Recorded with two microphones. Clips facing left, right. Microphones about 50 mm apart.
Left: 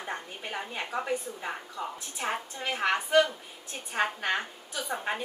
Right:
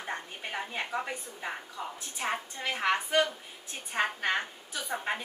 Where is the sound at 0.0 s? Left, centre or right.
Centre.